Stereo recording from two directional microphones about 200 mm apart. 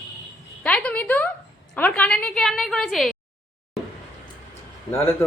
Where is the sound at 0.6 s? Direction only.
5° left (ahead or behind).